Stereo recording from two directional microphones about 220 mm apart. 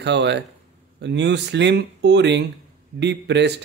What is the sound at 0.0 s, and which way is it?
A man's voice, 50° right (ahead or behind).